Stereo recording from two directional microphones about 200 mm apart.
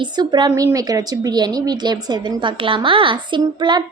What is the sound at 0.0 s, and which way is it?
A woman's voice, 20° right (ahead or behind).